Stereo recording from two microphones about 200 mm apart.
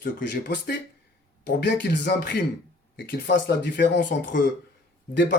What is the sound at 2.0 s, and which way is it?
Speech, 55° left (ahead or behind).